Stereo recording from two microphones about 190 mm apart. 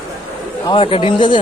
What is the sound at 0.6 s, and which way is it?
Speech, 25° left (ahead or behind).